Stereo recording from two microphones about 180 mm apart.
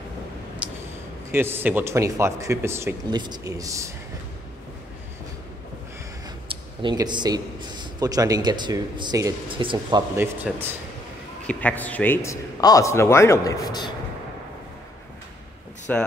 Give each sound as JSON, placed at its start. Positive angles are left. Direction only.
{"t": 0.6, "sound": "a sound", "side_deg": -5}
{"t": 1.3, "sound": "speech", "side_deg": -10}
{"t": 6.8, "sound": "a man's voice", "side_deg": -25}
{"t": 10.1, "sound": "speech", "side_deg": -10}
{"t": 11.4, "sound": "a man's voice", "side_deg": 10}
{"t": 15.9, "sound": "a man's voice", "side_deg": 10}